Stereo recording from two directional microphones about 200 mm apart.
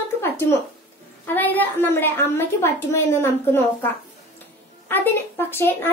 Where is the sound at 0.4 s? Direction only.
15° left (ahead or behind).